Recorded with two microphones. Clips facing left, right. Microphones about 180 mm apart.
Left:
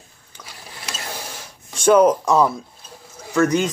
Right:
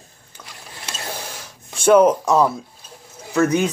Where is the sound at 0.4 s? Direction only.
5° right (ahead or behind).